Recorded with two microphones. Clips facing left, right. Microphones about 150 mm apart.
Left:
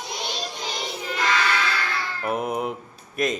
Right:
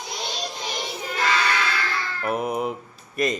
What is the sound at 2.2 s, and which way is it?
Speech, centre (ahead or behind).